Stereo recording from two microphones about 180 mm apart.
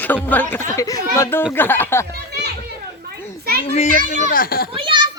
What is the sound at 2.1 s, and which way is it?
Speech, 65° right (ahead or behind).